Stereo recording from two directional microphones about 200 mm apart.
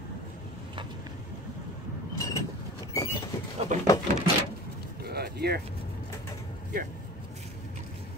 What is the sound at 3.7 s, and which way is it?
Speech, 40° right (ahead or behind).